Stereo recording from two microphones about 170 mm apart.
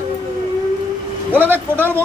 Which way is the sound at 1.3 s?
10° right (ahead or behind).